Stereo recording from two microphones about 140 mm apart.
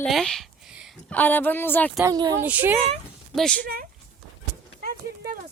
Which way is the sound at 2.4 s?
15° right (ahead or behind).